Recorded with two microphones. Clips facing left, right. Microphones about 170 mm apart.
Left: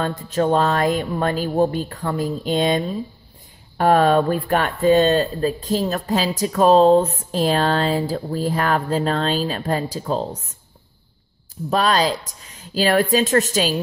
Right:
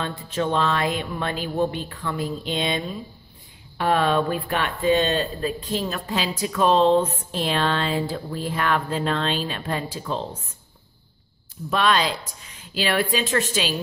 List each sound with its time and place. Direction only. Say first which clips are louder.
0.0 s speech: left 5 dB; 40° left (ahead or behind)
11.7 s speech: left 3 dB; 40° left (ahead or behind)